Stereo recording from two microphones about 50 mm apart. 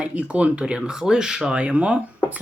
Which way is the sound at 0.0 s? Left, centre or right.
Right.